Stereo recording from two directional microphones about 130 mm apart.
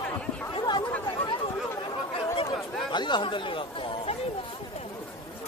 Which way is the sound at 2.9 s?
35° left (ahead or behind).